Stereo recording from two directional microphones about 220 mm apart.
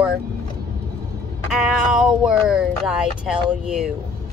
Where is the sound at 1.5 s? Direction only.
Centre (ahead or behind).